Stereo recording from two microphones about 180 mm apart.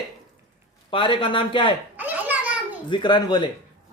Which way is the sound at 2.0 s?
10° right (ahead or behind).